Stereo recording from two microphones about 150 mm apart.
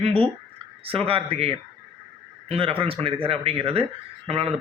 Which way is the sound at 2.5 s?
40° right (ahead or behind).